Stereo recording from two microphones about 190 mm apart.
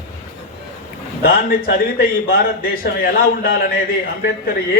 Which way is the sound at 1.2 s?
50° left (ahead or behind).